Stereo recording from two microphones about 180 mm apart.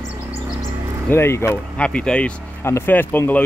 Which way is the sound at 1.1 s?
15° left (ahead or behind).